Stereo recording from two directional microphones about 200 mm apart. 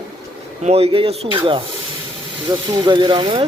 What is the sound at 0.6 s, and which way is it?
Speech, 30° right (ahead or behind).